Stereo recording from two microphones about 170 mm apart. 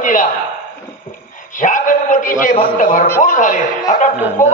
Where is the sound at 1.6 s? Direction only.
45° left (ahead or behind).